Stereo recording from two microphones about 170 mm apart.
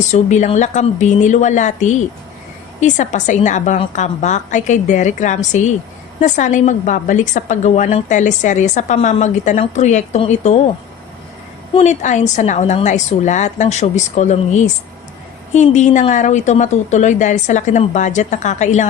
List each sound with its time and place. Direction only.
0.1 s a woman's voice: 45° left (ahead or behind)
11.7 s a woman's voice: 45° left (ahead or behind)